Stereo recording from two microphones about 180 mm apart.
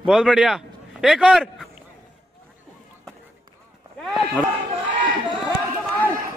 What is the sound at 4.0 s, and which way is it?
Sheep, centre (ahead or behind).